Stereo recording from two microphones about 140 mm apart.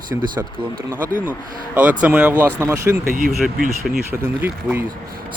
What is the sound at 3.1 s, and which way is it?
Speech, 75° right (ahead or behind).